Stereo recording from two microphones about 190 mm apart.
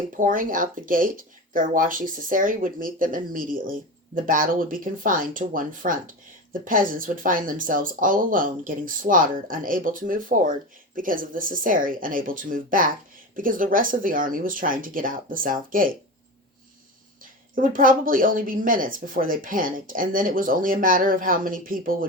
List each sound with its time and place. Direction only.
0.2 s speech: 45° right (ahead or behind)
17.5 s speech: 45° right (ahead or behind)